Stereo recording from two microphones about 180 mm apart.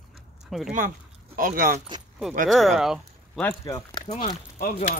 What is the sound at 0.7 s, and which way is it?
Speech, 50° right (ahead or behind).